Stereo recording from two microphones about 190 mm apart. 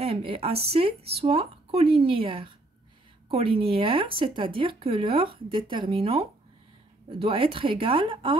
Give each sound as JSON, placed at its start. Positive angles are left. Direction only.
{"t": 0.0, "sound": "speech", "side_deg": -30}